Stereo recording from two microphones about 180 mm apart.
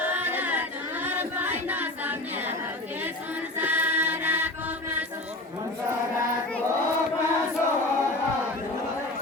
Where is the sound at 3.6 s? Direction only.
10° right (ahead or behind).